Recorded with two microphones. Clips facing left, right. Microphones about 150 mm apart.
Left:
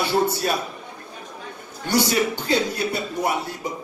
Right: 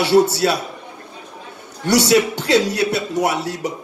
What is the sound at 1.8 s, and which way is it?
A man's voice, 75° right (ahead or behind).